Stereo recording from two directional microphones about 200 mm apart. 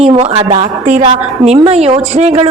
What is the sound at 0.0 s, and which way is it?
A woman's voice, 30° right (ahead or behind).